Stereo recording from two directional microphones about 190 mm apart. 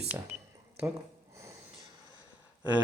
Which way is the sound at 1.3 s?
15° right (ahead or behind).